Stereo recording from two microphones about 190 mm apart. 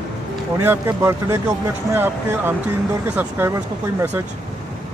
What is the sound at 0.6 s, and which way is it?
Speech, 15° right (ahead or behind).